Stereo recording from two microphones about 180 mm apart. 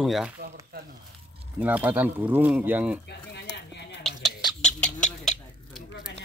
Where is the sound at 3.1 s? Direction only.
70° left (ahead or behind).